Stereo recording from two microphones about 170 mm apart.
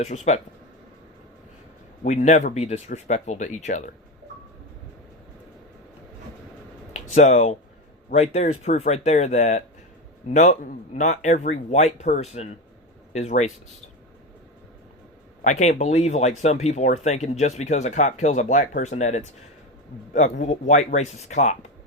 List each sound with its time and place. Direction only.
0.0 s speech: 40° left (ahead or behind)
2.0 s speech: 45° left (ahead or behind)
6.9 s speech: 45° left (ahead or behind)
15.4 s speech: 45° left (ahead or behind)